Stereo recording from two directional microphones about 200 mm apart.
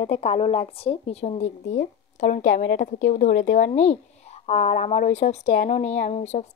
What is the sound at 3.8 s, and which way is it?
A woman's voice, 35° left (ahead or behind).